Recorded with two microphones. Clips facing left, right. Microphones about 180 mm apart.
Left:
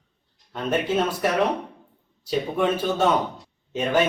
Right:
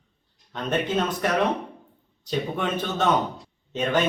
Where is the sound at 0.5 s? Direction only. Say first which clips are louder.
Left 2 dB; 10° left (ahead or behind).